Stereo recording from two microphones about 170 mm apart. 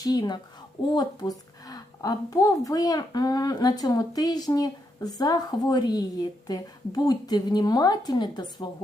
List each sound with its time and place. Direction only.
0.0 s a woman's voice: 25° left (ahead or behind)